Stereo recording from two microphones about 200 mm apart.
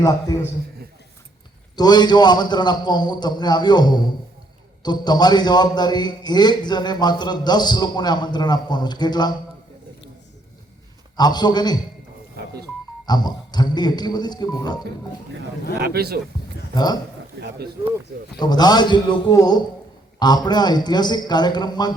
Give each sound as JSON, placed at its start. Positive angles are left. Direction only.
{"t": 0.0, "sound": "a man's voice", "side_deg": 20}
{"t": 1.7, "sound": "a man's voice", "side_deg": 20}
{"t": 11.2, "sound": "a man's voice", "side_deg": 20}
{"t": 13.1, "sound": "a man's voice", "side_deg": 20}
{"t": 15.8, "sound": "a man's voice", "side_deg": -50}
{"t": 16.7, "sound": "a man's voice", "side_deg": 20}
{"t": 18.3, "sound": "a man's voice", "side_deg": 20}